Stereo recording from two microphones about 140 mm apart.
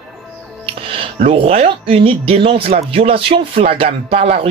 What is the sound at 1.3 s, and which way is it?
Speech, 50° right (ahead or behind).